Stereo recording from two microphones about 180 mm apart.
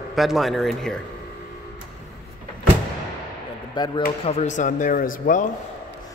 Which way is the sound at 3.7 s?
25° left (ahead or behind).